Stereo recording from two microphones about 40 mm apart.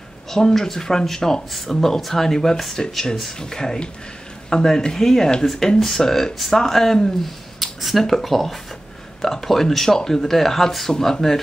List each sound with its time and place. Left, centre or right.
0.3 s speech: centre